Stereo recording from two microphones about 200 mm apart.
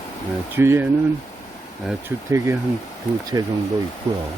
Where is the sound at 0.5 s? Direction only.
10° right (ahead or behind).